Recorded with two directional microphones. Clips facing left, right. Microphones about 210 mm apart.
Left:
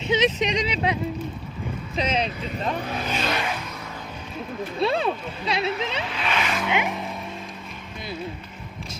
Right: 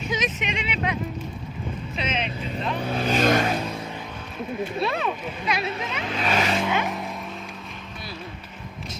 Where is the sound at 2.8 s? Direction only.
30° right (ahead or behind).